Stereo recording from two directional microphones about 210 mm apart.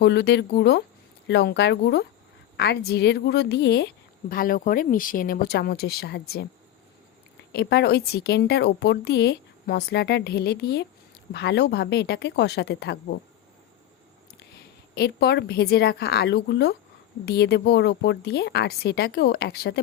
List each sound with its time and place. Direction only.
0.0 s a woman's voice: 55° left (ahead or behind)
7.5 s a woman's voice: 55° left (ahead or behind)
14.9 s a woman's voice: 50° left (ahead or behind)